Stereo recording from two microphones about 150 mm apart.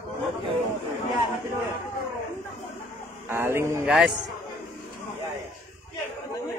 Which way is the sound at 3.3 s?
15° right (ahead or behind).